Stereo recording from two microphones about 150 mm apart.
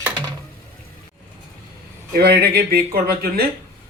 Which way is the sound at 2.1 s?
90° right.